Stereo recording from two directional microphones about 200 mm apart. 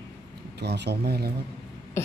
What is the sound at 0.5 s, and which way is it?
Speech, 55° right (ahead or behind).